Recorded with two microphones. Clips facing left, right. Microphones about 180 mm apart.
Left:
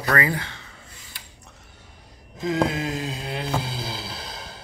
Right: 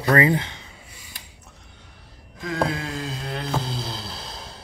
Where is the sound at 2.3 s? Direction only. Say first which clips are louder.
Left 2 dB; 20° left (ahead or behind); by 4.6 s centre (ahead or behind).